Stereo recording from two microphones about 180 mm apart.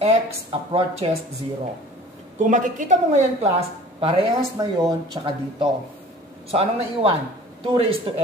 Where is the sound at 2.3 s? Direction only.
45° right (ahead or behind); by 5.7 s 25° right (ahead or behind).